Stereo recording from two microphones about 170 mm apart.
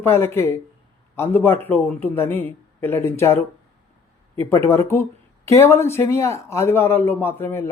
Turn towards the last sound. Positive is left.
turn(degrees=15)  # may be behind; listen again after turning